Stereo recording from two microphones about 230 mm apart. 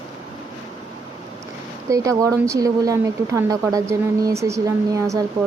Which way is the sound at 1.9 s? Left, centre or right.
Centre.